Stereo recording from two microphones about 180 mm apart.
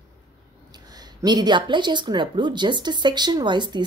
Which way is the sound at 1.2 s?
25° right (ahead or behind).